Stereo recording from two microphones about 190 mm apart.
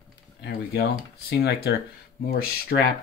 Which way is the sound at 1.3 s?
60° left (ahead or behind).